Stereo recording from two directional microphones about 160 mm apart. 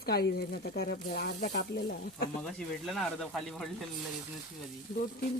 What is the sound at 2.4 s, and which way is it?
Speech, 5° left (ahead or behind).